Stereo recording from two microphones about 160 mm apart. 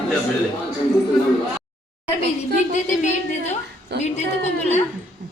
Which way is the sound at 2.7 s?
45° left (ahead or behind).